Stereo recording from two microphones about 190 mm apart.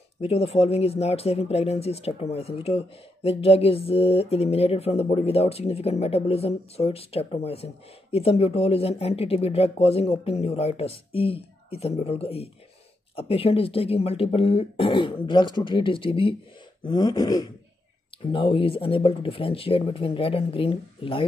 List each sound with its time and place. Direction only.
0.2 s speech: 30° left (ahead or behind)